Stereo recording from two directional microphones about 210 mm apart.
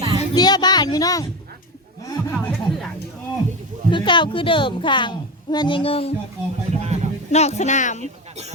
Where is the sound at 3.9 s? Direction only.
20° left (ahead or behind).